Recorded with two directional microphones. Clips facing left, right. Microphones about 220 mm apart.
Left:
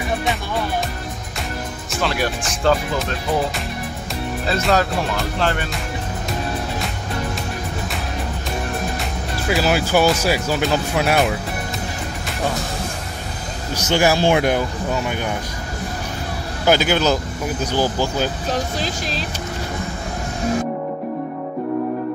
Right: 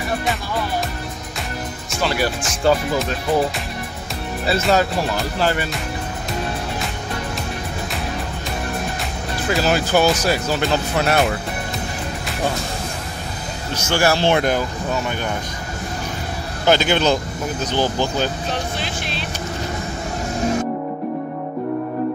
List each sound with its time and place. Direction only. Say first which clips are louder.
1.9 s speech: right 1 dB; centre (ahead or behind)
4.5 s speech: right 1 dB; centre (ahead or behind)
9.5 s speech: even; 10° left (ahead or behind)
13.8 s speech: left 1 dB; 15° left (ahead or behind)
16.6 s speech: even; 10° left (ahead or behind)
18.5 s speech: left 2 dB; 40° left (ahead or behind)